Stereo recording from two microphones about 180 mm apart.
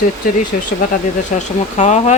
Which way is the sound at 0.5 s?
50° left (ahead or behind).